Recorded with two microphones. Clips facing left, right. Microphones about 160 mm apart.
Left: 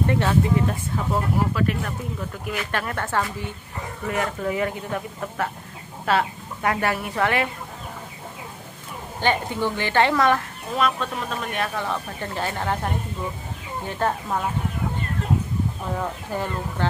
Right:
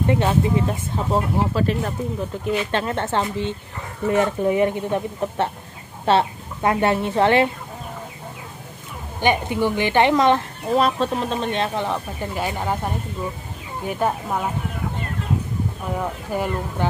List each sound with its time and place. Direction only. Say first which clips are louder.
0.1 s speech: right 4 dB; 20° right (ahead or behind)
9.2 s a woman's voice: right 3 dB; 15° right (ahead or behind)
10.8 s a woman's voice: right 3 dB; 30° right (ahead or behind); by 14.4 s 10° right (ahead or behind)
16.0 s a woman's voice: right 4 dB; 15° right (ahead or behind)